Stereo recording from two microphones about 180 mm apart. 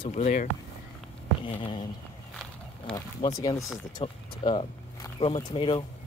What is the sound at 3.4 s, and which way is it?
Speech, 20° left (ahead or behind).